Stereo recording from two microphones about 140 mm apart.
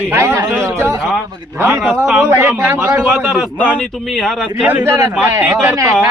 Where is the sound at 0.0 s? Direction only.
15° right (ahead or behind).